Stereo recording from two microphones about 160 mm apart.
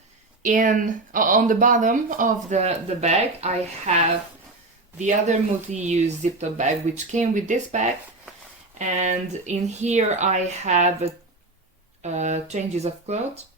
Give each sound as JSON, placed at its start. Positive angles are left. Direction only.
{"t": 0.4, "sound": "speech", "side_deg": -55}
{"t": 2.5, "sound": "speech", "side_deg": -45}